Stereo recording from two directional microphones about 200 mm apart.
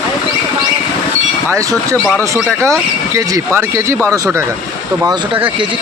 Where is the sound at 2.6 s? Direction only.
15° right (ahead or behind).